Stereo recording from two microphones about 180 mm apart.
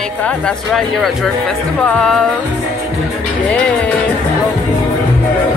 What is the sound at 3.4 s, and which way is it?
Speech, 5° left (ahead or behind).